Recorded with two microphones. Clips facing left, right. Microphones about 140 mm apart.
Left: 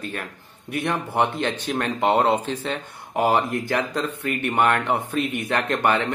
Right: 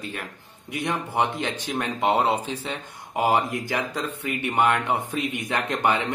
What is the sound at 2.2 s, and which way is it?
A man's voice, 10° right (ahead or behind).